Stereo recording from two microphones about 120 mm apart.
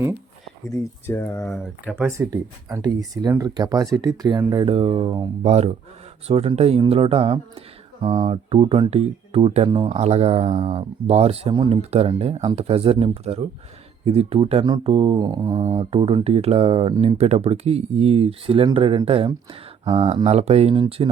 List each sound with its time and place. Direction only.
1.0 s speech: 20° left (ahead or behind)
2.0 s speech: 25° right (ahead or behind)
4.6 s speech: 50° right (ahead or behind)
5.4 s speech: 65° right (ahead or behind)
8.0 s mantra: 35° right (ahead or behind)
8.3 s speech: 55° right (ahead or behind)
9.6 s mantra: 40° right (ahead or behind)
9.9 s speech: 65° right (ahead or behind)
11.0 s speech: 60° right (ahead or behind)
15.2 s mantra: 35° right (ahead or behind)
15.9 s speech: 50° right (ahead or behind)
20.7 s mantra: 40° right (ahead or behind)